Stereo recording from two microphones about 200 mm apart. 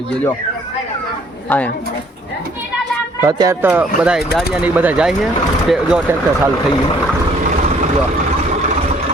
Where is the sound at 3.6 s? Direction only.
5° right (ahead or behind).